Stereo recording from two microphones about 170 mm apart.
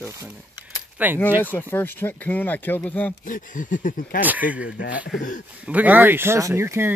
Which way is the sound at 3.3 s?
50° left (ahead or behind).